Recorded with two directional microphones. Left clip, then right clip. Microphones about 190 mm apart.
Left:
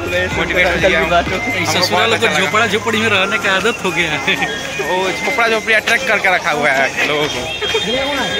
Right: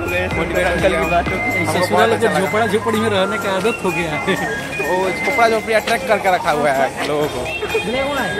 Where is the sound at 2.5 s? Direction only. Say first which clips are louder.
Left 2 dB; 20° right (ahead or behind).